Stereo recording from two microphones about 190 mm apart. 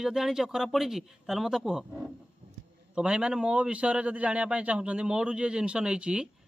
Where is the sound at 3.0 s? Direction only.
5° right (ahead or behind).